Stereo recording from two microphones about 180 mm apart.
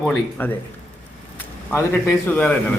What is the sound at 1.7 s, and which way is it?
Speech, 15° left (ahead or behind).